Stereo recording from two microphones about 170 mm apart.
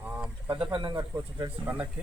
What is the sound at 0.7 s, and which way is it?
Speech, 25° right (ahead or behind).